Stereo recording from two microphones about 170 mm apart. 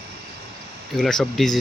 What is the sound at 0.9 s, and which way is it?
Speech, 5° left (ahead or behind).